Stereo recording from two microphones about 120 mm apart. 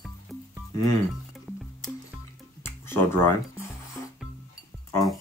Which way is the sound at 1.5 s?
10° right (ahead or behind).